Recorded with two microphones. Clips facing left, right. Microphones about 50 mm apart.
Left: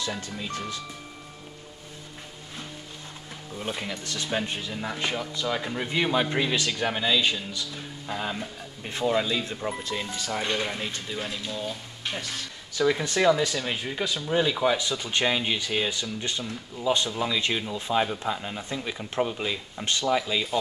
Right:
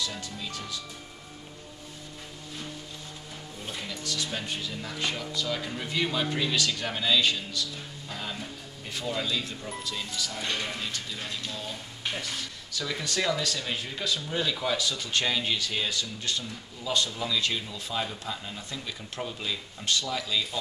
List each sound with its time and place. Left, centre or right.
0.0 s speech: left
3.5 s speech: left
10.5 s speech: left
11.1 s speech: centre
12.0 s speech: centre
12.7 s speech: left